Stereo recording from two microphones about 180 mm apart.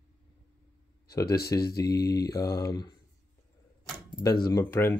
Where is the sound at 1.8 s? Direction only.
20° left (ahead or behind).